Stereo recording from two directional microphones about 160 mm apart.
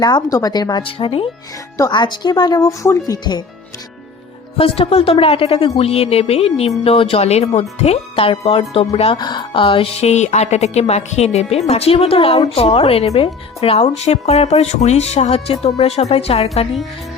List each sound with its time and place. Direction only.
0.0 s speech: 25° left (ahead or behind)
4.5 s a woman's voice: 35° left (ahead or behind)
9.1 s a woman's voice: 25° left (ahead or behind)